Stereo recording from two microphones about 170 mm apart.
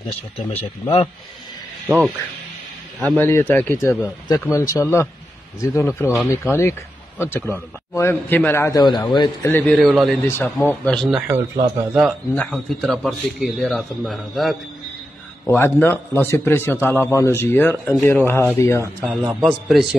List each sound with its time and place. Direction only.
0.6 s speech: 35° left (ahead or behind)
3.0 s speech: 10° left (ahead or behind)
8.8 s a man's voice: 25° left (ahead or behind)
9.5 s speech: 10° left (ahead or behind)
9.8 s a man's voice: centre (ahead or behind)
10.2 s speech: 15° left (ahead or behind)
11.2 s a man's voice: 15° right (ahead or behind)
11.7 s a man's voice: 5° right (ahead or behind)
15.4 s speech: 15° left (ahead or behind)
18.9 s a man's voice: 5° right (ahead or behind)